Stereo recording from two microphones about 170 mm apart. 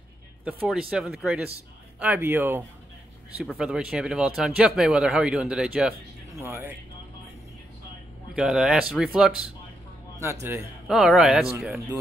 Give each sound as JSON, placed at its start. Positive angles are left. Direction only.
{"t": 0.7, "sound": "speech", "side_deg": -5}
{"t": 8.4, "sound": "speech", "side_deg": -5}
{"t": 10.4, "sound": "speech", "side_deg": -5}